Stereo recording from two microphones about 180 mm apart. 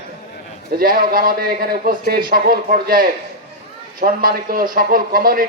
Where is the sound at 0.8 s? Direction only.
50° right (ahead or behind).